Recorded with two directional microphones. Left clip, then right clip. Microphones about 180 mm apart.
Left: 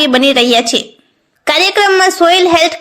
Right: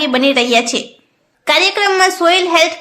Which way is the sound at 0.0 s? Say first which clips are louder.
Left 4 dB; 30° left (ahead or behind).